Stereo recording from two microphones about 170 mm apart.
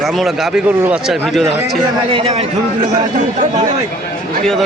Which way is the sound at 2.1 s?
35° right (ahead or behind).